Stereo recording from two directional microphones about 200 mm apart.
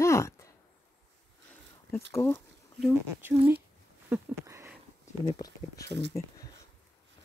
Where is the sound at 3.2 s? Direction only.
10° right (ahead or behind).